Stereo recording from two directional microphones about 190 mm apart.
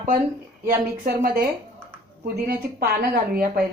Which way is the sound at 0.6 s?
50° right (ahead or behind).